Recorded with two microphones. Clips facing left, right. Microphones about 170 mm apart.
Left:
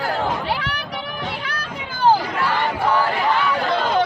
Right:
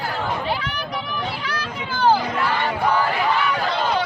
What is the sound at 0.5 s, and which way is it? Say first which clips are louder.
Run: left 1 dB; 75° left (ahead or behind).